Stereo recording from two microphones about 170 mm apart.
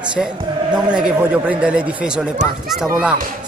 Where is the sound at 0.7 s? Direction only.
5° right (ahead or behind).